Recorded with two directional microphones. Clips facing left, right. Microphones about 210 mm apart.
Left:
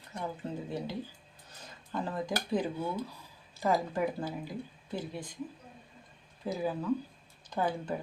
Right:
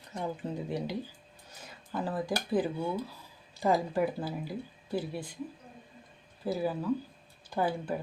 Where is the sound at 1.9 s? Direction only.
5° right (ahead or behind).